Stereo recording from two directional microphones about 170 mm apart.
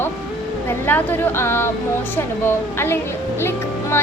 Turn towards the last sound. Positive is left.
turn(degrees=15)  # may be behind; listen again after turning